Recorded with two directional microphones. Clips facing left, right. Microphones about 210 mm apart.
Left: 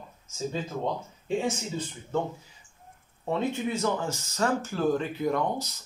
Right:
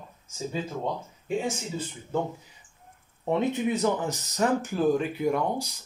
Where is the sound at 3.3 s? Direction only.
15° right (ahead or behind).